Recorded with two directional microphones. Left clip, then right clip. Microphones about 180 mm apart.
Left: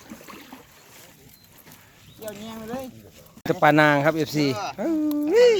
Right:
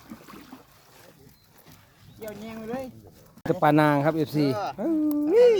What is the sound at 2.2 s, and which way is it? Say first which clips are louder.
Speech: left 2 dB; 30° right (ahead or behind).